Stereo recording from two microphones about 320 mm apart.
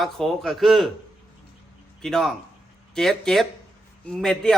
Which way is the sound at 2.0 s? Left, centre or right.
Centre.